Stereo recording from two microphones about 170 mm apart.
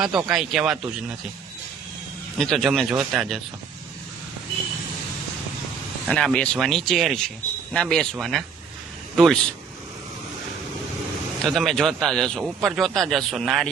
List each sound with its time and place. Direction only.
0.0 s a man's voice: centre (ahead or behind)
2.4 s a man's voice: centre (ahead or behind)
6.1 s a man's voice: 5° left (ahead or behind)
11.4 s a man's voice: centre (ahead or behind)